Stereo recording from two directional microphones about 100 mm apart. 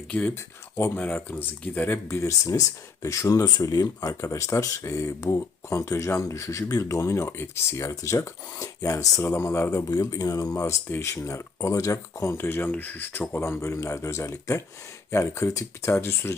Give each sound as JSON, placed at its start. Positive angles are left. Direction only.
{"t": 0.1, "sound": "speech", "side_deg": 10}
{"t": 2.0, "sound": "speech", "side_deg": 30}
{"t": 9.9, "sound": "speech", "side_deg": 40}
{"t": 10.9, "sound": "speech", "side_deg": 25}